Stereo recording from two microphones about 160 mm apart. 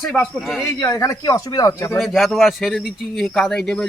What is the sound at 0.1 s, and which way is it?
Speech, centre (ahead or behind).